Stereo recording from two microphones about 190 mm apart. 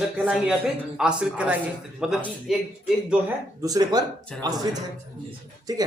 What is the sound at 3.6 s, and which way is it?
Speech, 20° right (ahead or behind).